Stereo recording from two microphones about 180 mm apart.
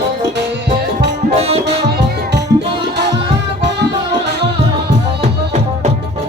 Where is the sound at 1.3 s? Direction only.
35° right (ahead or behind).